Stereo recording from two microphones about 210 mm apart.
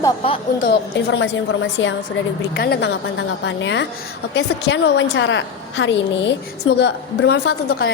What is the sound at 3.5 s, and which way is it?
A woman's voice, 60° left (ahead or behind).